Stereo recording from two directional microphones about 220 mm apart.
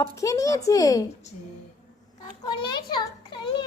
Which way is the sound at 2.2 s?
20° left (ahead or behind).